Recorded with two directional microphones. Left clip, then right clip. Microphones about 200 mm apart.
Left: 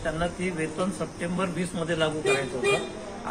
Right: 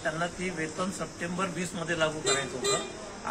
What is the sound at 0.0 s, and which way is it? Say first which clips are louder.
Speech: left 3 dB; centre (ahead or behind).